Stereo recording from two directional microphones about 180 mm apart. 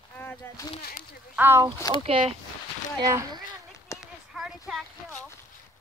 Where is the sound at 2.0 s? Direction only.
35° right (ahead or behind).